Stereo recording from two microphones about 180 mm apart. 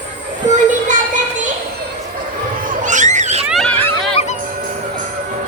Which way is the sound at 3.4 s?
Centre (ahead or behind).